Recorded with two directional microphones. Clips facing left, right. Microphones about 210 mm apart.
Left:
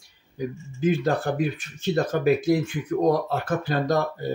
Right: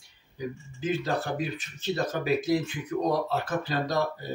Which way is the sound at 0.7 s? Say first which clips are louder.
Left 6 dB; 50° left (ahead or behind).